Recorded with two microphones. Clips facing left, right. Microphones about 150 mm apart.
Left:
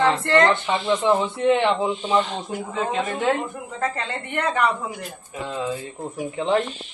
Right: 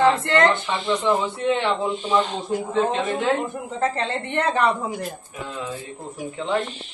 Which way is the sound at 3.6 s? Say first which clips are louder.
Right 3 dB; 25° right (ahead or behind).